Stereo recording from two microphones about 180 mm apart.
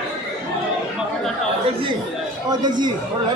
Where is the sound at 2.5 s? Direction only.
25° right (ahead or behind).